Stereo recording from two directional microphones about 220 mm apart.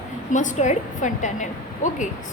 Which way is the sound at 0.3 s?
35° left (ahead or behind).